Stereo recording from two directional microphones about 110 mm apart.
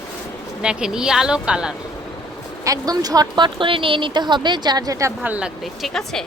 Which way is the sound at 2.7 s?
35° right (ahead or behind).